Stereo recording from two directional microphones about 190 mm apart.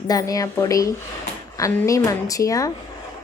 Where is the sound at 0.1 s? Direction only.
20° left (ahead or behind).